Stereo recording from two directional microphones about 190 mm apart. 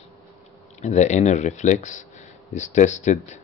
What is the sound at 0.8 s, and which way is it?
Speech, 40° left (ahead or behind).